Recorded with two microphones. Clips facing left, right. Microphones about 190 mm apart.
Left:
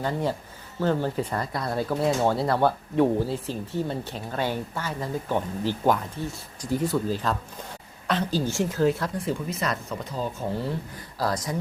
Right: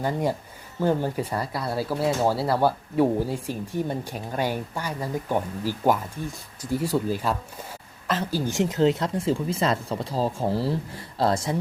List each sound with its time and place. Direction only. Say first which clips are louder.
0.0 s speech: right 2 dB; 10° right (ahead or behind)
8.0 s a sound: left 1 dB; centre (ahead or behind)
8.4 s speech: right 4 dB; 20° right (ahead or behind)